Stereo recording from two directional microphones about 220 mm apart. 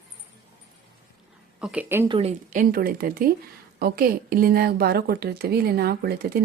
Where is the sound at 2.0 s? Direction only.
25° right (ahead or behind).